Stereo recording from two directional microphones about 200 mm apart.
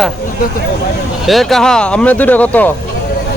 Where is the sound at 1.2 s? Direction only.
Centre (ahead or behind).